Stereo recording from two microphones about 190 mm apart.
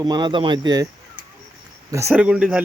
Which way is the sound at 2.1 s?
5° right (ahead or behind).